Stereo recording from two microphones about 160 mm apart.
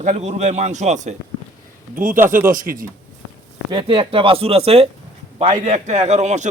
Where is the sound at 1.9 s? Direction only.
60° right (ahead or behind).